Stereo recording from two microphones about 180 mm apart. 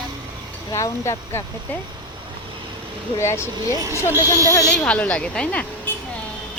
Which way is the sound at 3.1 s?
15° left (ahead or behind).